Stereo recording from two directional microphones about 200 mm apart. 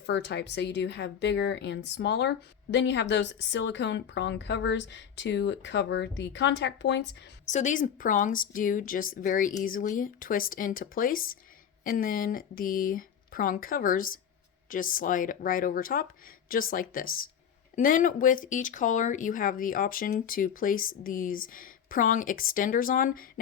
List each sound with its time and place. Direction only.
0.0 s a woman's voice: 60° left (ahead or behind)
7.4 s speech: 35° left (ahead or behind)